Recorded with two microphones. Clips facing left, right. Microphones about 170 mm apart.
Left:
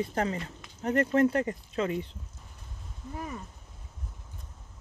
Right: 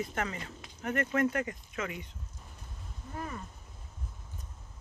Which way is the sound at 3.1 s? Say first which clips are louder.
Left 2 dB; 10° left (ahead or behind).